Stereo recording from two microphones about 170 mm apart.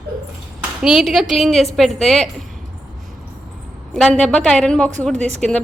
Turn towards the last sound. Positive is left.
turn(degrees=-40)  # may be behind; listen again after turning